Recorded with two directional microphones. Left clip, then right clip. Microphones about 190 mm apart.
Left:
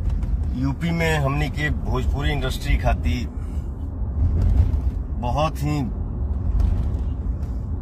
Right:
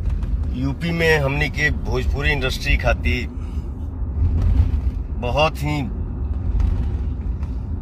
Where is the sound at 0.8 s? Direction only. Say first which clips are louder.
Right 6 dB; centre (ahead or behind).